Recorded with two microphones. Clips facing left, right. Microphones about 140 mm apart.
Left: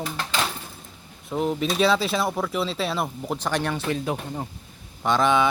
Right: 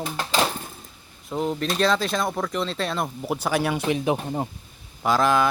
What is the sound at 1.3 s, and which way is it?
Speech, 5° left (ahead or behind).